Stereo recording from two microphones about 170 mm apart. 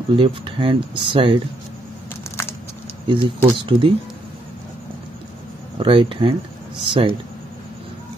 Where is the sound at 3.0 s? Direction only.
30° right (ahead or behind).